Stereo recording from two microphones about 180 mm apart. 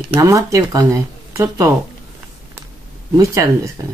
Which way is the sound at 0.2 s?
20° right (ahead or behind).